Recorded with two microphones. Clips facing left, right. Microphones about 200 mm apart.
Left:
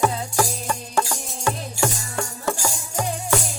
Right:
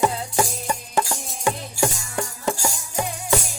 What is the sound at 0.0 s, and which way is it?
Music, 15° right (ahead or behind).